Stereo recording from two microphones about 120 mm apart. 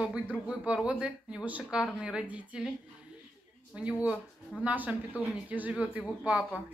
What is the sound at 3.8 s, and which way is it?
A woman's voice, 10° right (ahead or behind).